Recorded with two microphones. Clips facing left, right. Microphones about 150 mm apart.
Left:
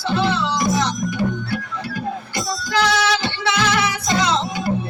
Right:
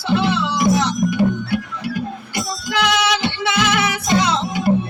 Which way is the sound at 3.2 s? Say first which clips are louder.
Right 1 dB; 20° right (ahead or behind).